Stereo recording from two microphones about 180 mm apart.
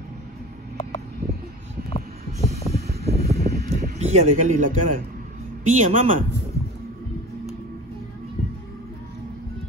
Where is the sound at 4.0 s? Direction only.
40° right (ahead or behind).